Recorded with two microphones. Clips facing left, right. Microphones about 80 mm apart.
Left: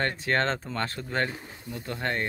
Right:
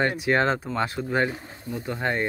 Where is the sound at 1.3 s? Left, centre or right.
Right.